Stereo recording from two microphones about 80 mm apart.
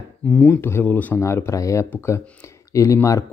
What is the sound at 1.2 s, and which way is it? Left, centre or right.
Speech, left.